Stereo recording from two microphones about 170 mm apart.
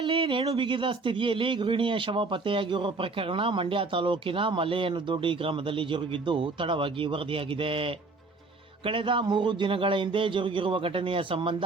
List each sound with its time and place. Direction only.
0.0 s speech: 30° right (ahead or behind)